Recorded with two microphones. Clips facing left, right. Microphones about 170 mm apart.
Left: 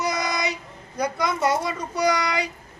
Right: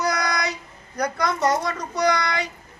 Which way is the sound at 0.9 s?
5° left (ahead or behind).